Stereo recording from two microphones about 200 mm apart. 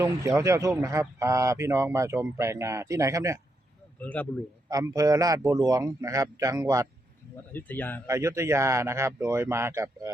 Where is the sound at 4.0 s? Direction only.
5° left (ahead or behind).